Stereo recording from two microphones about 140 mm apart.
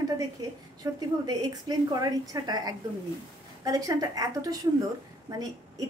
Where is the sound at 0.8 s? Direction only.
25° right (ahead or behind).